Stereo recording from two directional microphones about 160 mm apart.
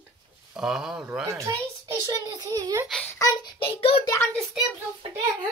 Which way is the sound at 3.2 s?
25° left (ahead or behind).